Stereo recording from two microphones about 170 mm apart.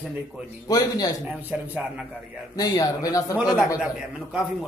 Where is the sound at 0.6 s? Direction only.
25° left (ahead or behind).